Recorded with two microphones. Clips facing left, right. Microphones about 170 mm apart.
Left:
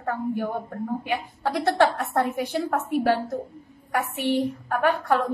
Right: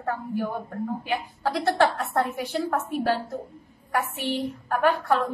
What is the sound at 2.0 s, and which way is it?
A woman's voice, 20° left (ahead or behind).